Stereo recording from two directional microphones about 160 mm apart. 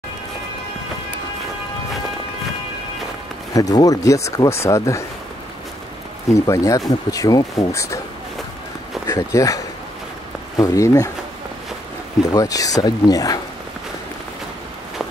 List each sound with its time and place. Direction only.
3.5 s speech: 20° left (ahead or behind)
6.3 s speech: 20° left (ahead or behind)
9.0 s speech: 20° left (ahead or behind)
10.6 s speech: 20° left (ahead or behind)
12.3 s speech: 20° left (ahead or behind)